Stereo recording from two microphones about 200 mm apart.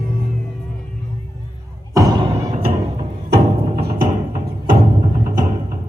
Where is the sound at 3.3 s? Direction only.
50° right (ahead or behind).